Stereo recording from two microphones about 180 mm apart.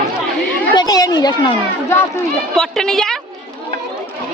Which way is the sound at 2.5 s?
Centre (ahead or behind).